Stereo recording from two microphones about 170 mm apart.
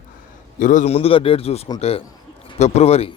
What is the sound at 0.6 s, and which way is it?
A man's voice, 50° left (ahead or behind).